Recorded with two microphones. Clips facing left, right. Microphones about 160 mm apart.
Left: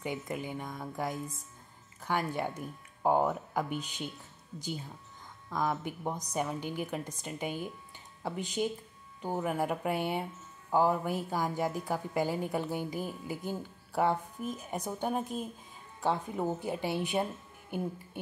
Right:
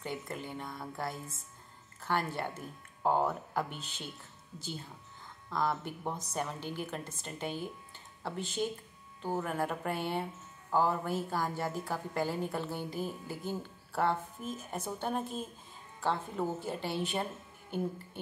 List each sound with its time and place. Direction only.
0.0 s a woman's voice: 10° left (ahead or behind)
5.5 s a woman's voice: 10° left (ahead or behind)